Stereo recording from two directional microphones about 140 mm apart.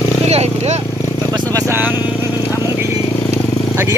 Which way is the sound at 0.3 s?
50° right (ahead or behind).